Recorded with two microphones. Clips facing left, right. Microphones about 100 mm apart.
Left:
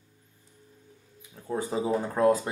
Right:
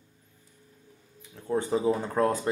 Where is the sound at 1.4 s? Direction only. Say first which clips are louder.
Right 3 dB; 10° left (ahead or behind).